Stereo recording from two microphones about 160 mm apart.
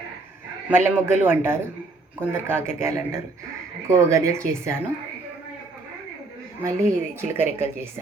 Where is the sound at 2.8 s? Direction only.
20° right (ahead or behind).